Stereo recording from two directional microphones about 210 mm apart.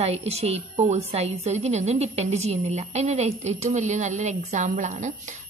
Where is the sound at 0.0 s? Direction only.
30° right (ahead or behind).